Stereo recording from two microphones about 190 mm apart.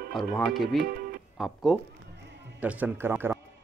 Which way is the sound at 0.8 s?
50° right (ahead or behind).